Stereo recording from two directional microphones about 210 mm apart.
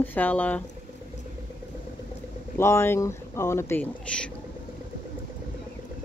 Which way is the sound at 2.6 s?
10° left (ahead or behind).